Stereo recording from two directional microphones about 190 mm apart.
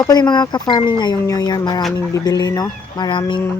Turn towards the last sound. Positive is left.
turn(degrees=25)  # may be behind; listen again after turning